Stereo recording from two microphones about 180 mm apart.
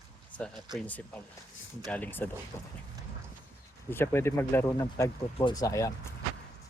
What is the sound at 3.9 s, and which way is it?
Speech, 15° left (ahead or behind).